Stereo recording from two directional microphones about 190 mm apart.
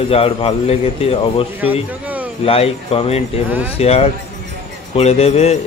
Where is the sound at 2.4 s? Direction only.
30° left (ahead or behind).